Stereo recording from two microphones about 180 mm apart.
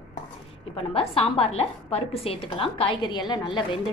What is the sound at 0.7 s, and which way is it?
A woman's voice, 35° left (ahead or behind).